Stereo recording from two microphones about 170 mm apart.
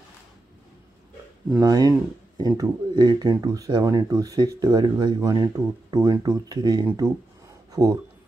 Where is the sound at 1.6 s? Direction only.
20° right (ahead or behind).